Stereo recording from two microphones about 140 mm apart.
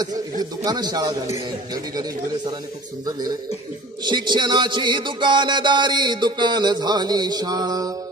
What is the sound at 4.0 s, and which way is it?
Music, 35° right (ahead or behind).